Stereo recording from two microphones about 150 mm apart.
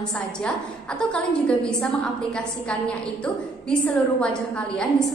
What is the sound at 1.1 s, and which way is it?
A woman's voice, 5° left (ahead or behind).